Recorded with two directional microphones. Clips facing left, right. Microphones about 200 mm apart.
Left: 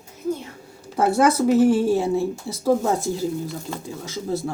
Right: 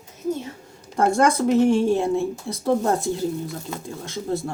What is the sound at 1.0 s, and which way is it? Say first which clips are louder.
Speech: left 1 dB; 5° left (ahead or behind).